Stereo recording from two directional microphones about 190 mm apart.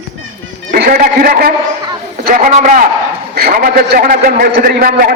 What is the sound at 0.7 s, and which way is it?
A man's voice, 50° right (ahead or behind).